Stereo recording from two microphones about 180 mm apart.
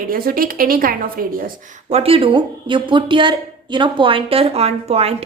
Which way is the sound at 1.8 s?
35° right (ahead or behind).